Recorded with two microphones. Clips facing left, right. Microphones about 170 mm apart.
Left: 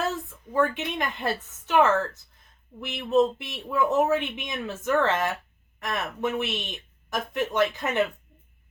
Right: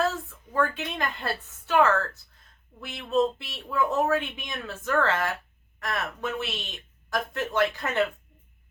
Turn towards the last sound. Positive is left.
turn(degrees=20)  # may be behind; listen again after turning